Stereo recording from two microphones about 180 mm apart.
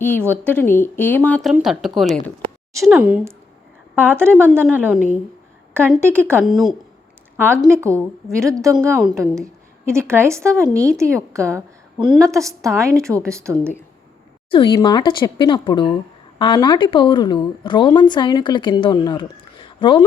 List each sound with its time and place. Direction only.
0.3 s a woman's voice: 10° left (ahead or behind); by 6.4 s 15° right (ahead or behind)
6.4 s speech: centre (ahead or behind)
7.3 s a woman's voice: 10° right (ahead or behind)
14.5 s a woman's voice: 25° left (ahead or behind)